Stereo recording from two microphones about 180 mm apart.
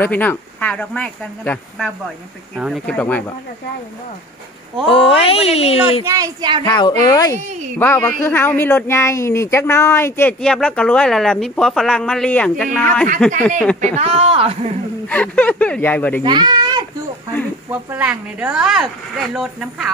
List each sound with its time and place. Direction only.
0.0 s speech: 10° left (ahead or behind)
4.8 s speech: 30° left (ahead or behind)
6.0 s speech: 20° right (ahead or behind)
6.6 s speech: 20° left (ahead or behind)
7.3 s speech: 40° right (ahead or behind)
7.8 s speech: 10° left (ahead or behind)
13.9 s speech: 35° right (ahead or behind)
15.0 s speech: 10° left (ahead or behind)
16.3 s speech: 25° right (ahead or behind)
17.6 s speech: 10° right (ahead or behind)